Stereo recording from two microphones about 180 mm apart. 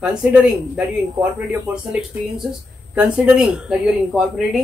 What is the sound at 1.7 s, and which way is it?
Speech, 5° right (ahead or behind).